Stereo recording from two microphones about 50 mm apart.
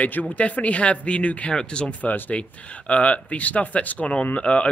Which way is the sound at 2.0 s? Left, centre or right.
Left.